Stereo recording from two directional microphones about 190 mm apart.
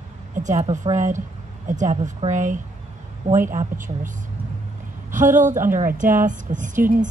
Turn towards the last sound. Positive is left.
turn(degrees=-40)  # may be behind; listen again after turning